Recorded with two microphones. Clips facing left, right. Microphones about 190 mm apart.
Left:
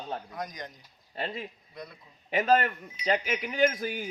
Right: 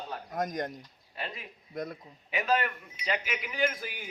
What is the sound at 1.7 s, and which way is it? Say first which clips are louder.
Speech: right 7 dB; 50° right (ahead or behind).